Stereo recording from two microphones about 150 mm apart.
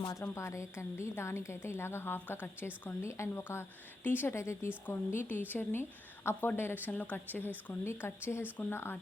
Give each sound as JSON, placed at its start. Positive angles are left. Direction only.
{"t": 0.0, "sound": "a woman's voice", "side_deg": 20}